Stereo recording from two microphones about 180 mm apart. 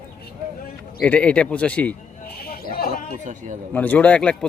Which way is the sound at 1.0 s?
5° left (ahead or behind).